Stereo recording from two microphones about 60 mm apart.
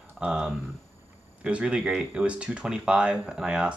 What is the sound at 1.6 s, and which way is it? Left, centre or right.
Speech, centre.